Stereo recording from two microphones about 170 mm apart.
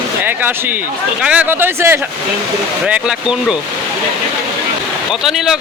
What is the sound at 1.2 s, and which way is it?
Speech, 10° right (ahead or behind).